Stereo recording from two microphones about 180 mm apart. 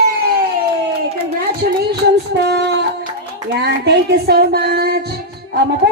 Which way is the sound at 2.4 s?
65° right (ahead or behind).